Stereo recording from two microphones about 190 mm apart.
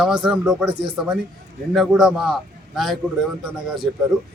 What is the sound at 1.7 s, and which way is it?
A man's voice, centre (ahead or behind).